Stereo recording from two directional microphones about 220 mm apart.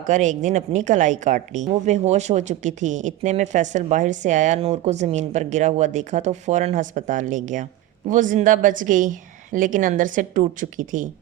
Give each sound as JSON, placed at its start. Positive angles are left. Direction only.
{"t": 0.0, "sound": "speech", "side_deg": -35}